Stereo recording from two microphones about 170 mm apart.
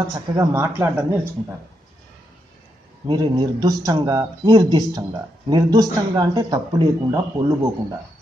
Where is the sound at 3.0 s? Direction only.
25° right (ahead or behind).